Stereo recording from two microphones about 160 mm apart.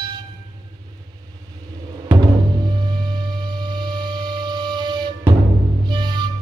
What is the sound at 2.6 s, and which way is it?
Music, 25° right (ahead or behind).